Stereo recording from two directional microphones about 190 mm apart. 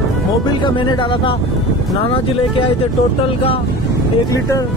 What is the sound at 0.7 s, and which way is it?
Speech, 25° left (ahead or behind).